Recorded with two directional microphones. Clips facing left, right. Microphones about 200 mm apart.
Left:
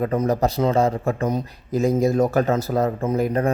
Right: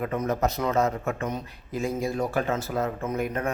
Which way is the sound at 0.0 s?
35° left (ahead or behind).